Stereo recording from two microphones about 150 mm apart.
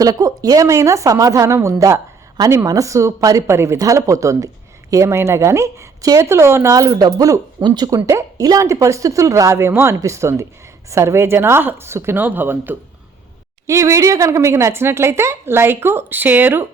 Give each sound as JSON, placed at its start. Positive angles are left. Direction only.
{"t": 0.0, "sound": "speech", "side_deg": -25}